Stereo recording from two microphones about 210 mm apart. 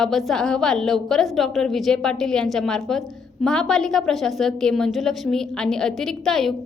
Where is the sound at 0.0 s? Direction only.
Centre (ahead or behind).